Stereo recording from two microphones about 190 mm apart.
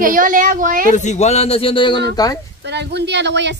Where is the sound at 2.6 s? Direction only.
65° right (ahead or behind).